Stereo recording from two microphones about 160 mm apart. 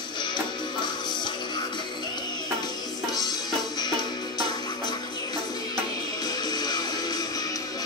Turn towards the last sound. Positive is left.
turn(degrees=25)  # may be behind; listen again after turning